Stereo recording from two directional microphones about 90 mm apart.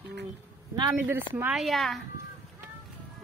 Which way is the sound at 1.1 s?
25° right (ahead or behind).